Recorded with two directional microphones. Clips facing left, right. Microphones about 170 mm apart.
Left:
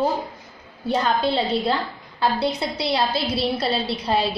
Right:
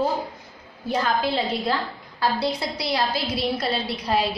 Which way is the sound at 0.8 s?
30° left (ahead or behind).